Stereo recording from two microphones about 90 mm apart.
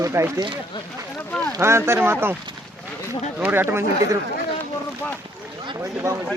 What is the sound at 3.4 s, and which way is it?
Speech, 20° right (ahead or behind).